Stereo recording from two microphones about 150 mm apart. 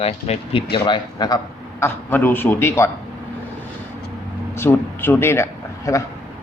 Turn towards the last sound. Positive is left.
turn(degrees=20)  # may be behind; listen again after turning